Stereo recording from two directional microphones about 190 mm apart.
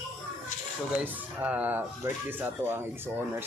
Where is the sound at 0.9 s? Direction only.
10° right (ahead or behind).